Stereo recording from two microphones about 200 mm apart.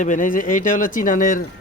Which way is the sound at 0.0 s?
40° left (ahead or behind).